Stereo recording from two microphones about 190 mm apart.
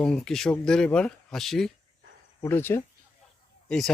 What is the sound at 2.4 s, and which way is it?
Speech, 10° left (ahead or behind).